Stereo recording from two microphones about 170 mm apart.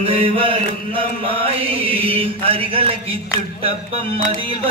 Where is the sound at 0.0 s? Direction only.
35° right (ahead or behind).